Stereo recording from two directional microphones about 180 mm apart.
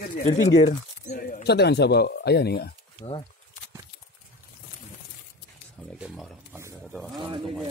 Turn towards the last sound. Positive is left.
turn(degrees=0)  # may be behind; listen again after turning